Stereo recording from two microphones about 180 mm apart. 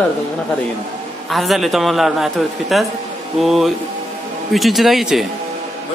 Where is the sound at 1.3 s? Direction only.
Centre (ahead or behind).